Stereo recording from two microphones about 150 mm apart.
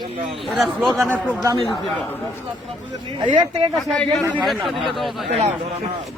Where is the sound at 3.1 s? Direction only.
30° right (ahead or behind).